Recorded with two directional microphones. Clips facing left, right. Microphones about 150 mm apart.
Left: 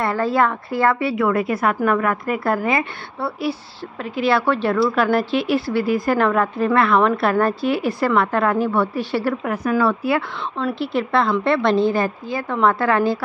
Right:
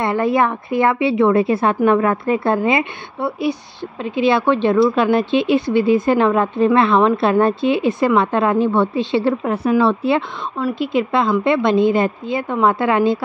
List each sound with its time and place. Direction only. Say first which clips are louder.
0.0 s speech: right 2 dB; 20° right (ahead or behind)
10.6 s a woman's voice: right 3 dB; 15° right (ahead or behind)